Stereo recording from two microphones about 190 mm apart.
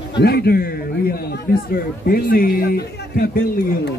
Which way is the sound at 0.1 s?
60° left (ahead or behind).